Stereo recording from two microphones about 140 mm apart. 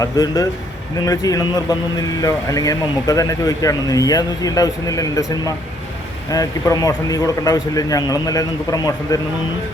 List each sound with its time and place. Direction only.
0.0 s speech: 25° left (ahead or behind)